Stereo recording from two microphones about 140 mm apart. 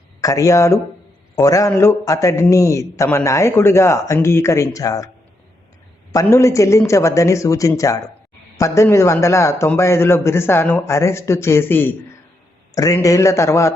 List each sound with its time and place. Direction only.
0.2 s a man's voice: 25° left (ahead or behind)
6.1 s a man's voice: 20° left (ahead or behind)